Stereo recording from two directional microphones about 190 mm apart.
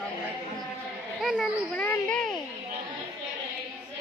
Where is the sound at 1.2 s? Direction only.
Centre (ahead or behind).